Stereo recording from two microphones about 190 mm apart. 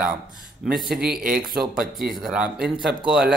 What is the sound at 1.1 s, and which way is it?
Speech, 45° right (ahead or behind).